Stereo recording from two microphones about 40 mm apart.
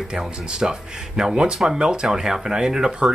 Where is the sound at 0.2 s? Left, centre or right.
Centre.